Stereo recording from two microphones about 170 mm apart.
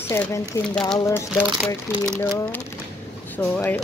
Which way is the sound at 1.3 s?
5° left (ahead or behind).